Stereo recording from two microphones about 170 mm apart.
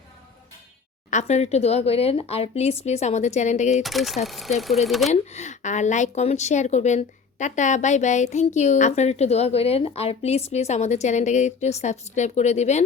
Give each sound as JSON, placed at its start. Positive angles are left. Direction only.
{"t": 1.1, "sound": "speech", "side_deg": 40}
{"t": 3.8, "sound": "speech", "side_deg": 0}
{"t": 5.0, "sound": "a woman's voice", "side_deg": 40}